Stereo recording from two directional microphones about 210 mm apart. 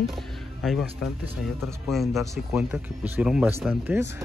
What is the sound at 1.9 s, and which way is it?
Speech, centre (ahead or behind).